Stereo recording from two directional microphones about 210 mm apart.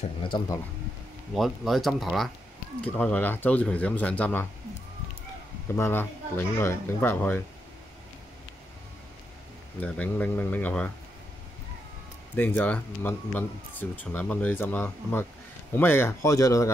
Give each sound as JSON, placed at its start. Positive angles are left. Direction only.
{"t": 0.2, "sound": "speech", "side_deg": 25}
{"t": 1.3, "sound": "speech", "side_deg": 0}
{"t": 5.8, "sound": "speech", "side_deg": 10}
{"t": 9.8, "sound": "speech", "side_deg": 5}
{"t": 12.4, "sound": "speech", "side_deg": 5}